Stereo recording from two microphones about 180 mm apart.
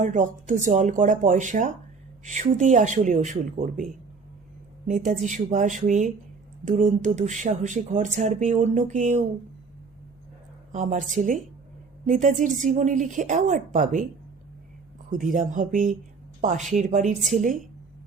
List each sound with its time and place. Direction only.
0.0 s speech: 45° right (ahead or behind)
4.9 s speech: 45° right (ahead or behind)
10.7 s speech: 45° right (ahead or behind)
15.1 s speech: 50° right (ahead or behind)